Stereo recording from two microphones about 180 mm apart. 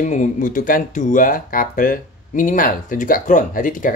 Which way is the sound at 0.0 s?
45° left (ahead or behind).